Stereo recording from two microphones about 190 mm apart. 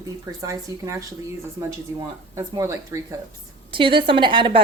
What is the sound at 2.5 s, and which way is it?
Speech, 15° right (ahead or behind).